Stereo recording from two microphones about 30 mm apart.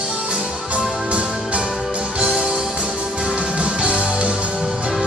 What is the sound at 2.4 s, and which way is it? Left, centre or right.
Music, right.